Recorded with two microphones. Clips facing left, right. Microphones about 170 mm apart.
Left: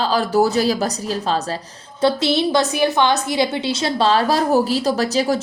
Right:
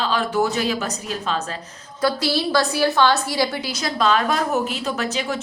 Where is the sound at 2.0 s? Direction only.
25° left (ahead or behind).